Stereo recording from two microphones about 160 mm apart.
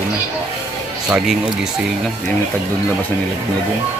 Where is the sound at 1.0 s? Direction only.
5° right (ahead or behind).